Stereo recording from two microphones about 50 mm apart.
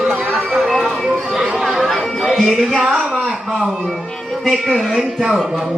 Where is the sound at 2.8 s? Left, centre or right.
Right.